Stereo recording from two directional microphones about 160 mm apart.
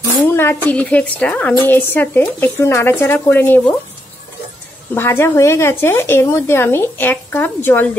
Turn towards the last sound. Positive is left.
turn(degrees=10)  # may be behind; listen again after turning